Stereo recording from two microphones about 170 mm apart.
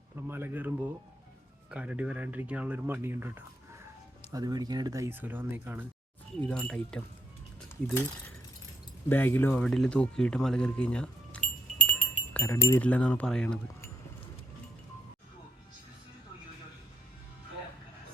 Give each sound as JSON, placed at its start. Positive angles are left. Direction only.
{"t": 0.2, "sound": "speech", "side_deg": -15}
{"t": 1.7, "sound": "speech", "side_deg": -5}
{"t": 6.5, "sound": "speech", "side_deg": 5}
{"t": 9.0, "sound": "speech", "side_deg": 10}